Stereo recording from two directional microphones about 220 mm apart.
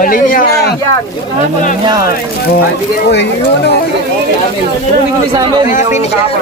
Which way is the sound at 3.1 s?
50° left (ahead or behind).